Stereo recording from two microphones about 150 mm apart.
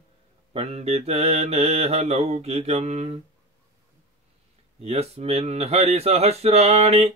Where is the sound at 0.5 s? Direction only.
45° right (ahead or behind).